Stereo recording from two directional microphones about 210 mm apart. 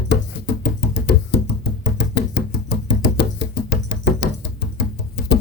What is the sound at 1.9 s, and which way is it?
Music, 55° left (ahead or behind).